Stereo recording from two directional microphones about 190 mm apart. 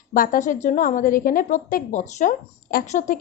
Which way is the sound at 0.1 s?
45° left (ahead or behind).